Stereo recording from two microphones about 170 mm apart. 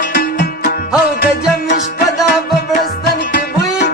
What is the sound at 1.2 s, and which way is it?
Music, 65° left (ahead or behind).